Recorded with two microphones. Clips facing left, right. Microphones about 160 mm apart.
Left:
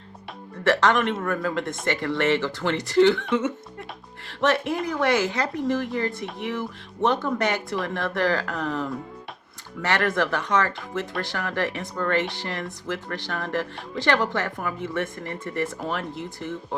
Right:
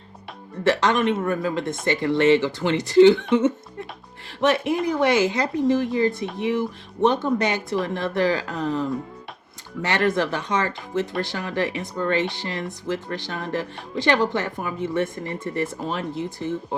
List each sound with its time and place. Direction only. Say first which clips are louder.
0.6 s speech: right 1 dB; 15° right (ahead or behind)
4.4 s speech: right 2 dB; 15° right (ahead or behind)
9.8 s speech: right 2 dB; 15° right (ahead or behind)